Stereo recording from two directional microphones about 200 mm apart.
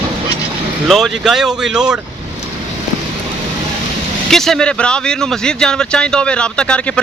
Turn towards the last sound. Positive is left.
turn(degrees=5)  # may be behind; listen again after turning